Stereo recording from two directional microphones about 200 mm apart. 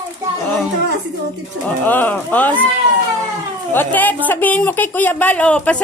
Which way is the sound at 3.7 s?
10° left (ahead or behind).